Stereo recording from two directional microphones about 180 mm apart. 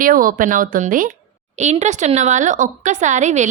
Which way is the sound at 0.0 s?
50° right (ahead or behind).